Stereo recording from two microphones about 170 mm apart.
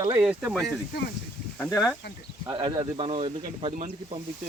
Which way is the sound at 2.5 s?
30° right (ahead or behind).